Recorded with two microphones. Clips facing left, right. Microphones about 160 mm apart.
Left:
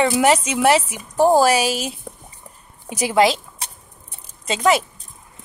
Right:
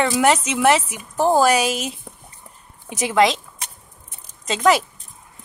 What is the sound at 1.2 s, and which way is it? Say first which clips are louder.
Speech: left 2 dB; 10° left (ahead or behind).